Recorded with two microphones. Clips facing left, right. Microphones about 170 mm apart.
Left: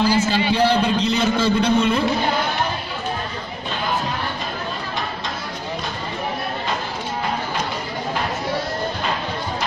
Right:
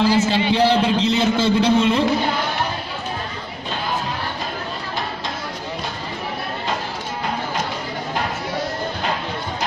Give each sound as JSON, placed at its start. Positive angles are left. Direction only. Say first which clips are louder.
{"t": 0.0, "sound": "a man's voice", "louder": "right 1 dB", "side_deg": -25}